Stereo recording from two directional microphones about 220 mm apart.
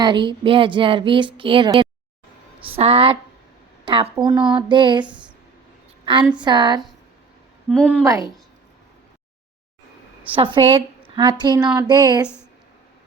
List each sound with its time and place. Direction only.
0.0 s speech: 20° right (ahead or behind)
6.4 s speech: 20° right (ahead or behind)
7.8 s a woman's voice: 5° right (ahead or behind)
8.0 s speech: 15° right (ahead or behind)
10.3 s speech: 25° right (ahead or behind)